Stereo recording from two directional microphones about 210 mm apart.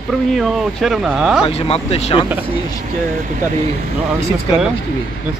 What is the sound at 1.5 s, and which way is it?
Speech, 30° left (ahead or behind).